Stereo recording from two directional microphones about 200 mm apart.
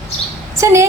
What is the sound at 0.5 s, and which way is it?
Speech, 15° right (ahead or behind).